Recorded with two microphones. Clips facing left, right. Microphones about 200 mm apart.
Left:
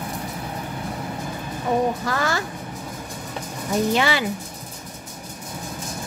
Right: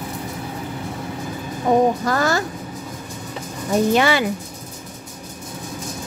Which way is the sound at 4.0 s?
50° right (ahead or behind).